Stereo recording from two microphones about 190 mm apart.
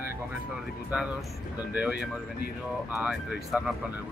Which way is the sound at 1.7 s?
5° right (ahead or behind).